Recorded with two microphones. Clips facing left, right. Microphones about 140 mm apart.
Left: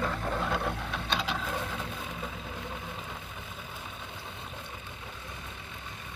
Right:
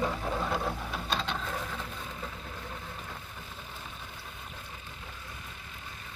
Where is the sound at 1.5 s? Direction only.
20° left (ahead or behind).